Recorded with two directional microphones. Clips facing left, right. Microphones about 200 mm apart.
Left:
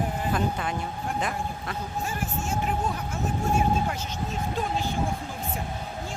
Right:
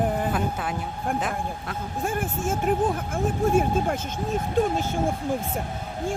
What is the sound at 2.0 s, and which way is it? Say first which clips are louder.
Speech: right 7 dB; 55° right (ahead or behind).